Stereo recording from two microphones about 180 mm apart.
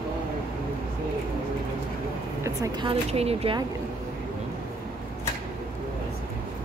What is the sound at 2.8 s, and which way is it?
Speech, 35° right (ahead or behind).